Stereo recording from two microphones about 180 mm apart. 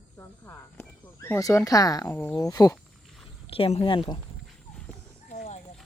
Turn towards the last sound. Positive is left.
turn(degrees=40)  # may be behind; listen again after turning